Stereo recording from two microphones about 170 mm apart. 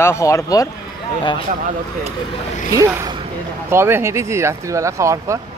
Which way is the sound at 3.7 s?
15° right (ahead or behind).